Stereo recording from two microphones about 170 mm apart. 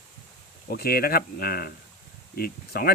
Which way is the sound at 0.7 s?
60° left (ahead or behind).